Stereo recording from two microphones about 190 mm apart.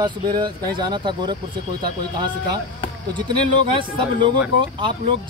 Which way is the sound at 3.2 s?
25° right (ahead or behind).